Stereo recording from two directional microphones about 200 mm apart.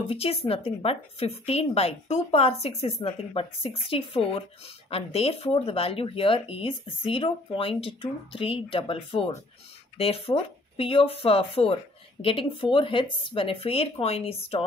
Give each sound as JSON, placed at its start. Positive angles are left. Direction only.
{"t": 0.0, "sound": "a woman's voice", "side_deg": 30}